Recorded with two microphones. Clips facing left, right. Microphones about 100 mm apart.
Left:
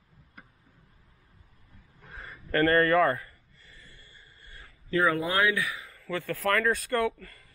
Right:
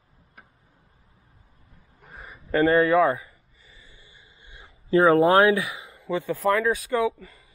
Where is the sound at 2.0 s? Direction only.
5° right (ahead or behind).